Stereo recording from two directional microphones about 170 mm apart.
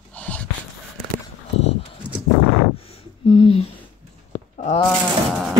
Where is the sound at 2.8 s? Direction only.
35° left (ahead or behind).